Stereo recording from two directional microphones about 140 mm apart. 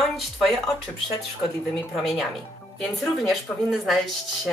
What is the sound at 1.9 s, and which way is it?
Speech, centre (ahead or behind).